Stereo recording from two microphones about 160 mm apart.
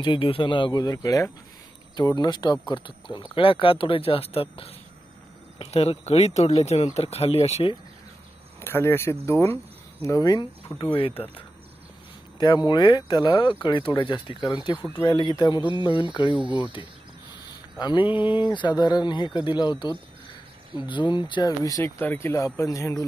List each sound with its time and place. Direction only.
0.0 s speech: 35° left (ahead or behind)
8.5 s speech: 15° left (ahead or behind)
10.8 s speech: 35° left (ahead or behind)
12.4 s speech: 25° left (ahead or behind)
16.3 s speech: 10° right (ahead or behind)
17.7 s speech: 30° left (ahead or behind)
20.7 s speech: 10° right (ahead or behind)
21.0 s speech: 30° left (ahead or behind)